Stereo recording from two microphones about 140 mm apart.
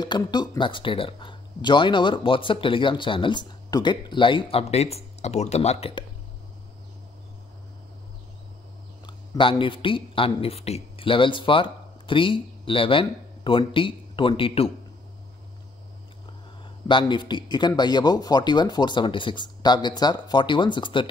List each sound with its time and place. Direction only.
0.0 s speech: 30° left (ahead or behind)
9.0 s speech: 35° left (ahead or behind)
16.8 s speech: 35° left (ahead or behind)